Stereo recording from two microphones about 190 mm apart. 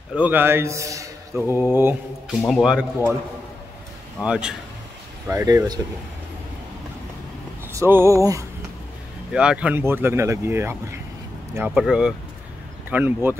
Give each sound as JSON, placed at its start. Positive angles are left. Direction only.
{"t": 0.1, "sound": "speech", "side_deg": -10}
{"t": 4.2, "sound": "speech", "side_deg": -5}
{"t": 5.2, "sound": "speech", "side_deg": -15}
{"t": 7.7, "sound": "speech", "side_deg": -15}
{"t": 9.3, "sound": "speech", "side_deg": -5}